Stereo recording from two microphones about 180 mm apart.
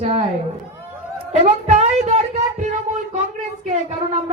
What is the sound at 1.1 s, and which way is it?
A man's voice, 35° right (ahead or behind).